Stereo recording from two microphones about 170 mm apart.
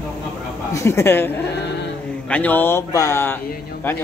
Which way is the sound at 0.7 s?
15° left (ahead or behind).